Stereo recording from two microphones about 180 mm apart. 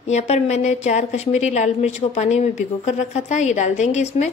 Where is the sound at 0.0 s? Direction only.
40° left (ahead or behind).